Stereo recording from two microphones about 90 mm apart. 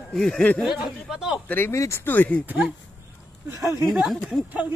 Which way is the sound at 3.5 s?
30° right (ahead or behind).